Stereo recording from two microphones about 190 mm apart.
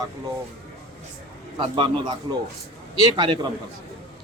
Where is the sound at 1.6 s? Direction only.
25° right (ahead or behind).